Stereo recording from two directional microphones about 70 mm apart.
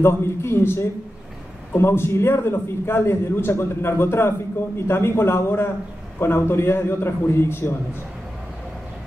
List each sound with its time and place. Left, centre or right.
0.0 s a man's voice: left